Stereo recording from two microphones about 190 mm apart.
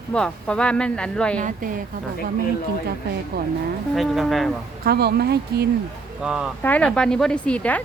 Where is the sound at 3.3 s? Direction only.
60° right (ahead or behind).